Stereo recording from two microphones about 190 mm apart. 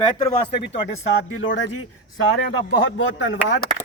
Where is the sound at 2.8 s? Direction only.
85° left.